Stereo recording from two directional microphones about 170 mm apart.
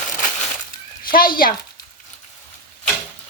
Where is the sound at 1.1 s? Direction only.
60° left (ahead or behind).